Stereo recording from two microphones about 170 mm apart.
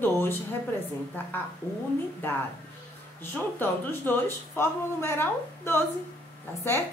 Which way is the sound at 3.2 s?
10° left (ahead or behind).